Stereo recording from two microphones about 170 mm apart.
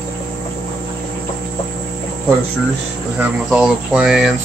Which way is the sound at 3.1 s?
5° right (ahead or behind).